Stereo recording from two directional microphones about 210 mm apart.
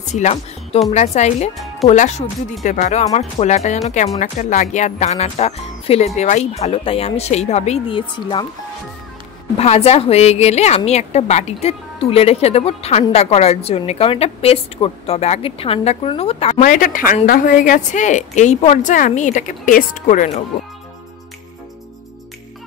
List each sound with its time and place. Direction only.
0.0 s a woman's voice: 35° left (ahead or behind)
9.6 s a woman's voice: 30° left (ahead or behind)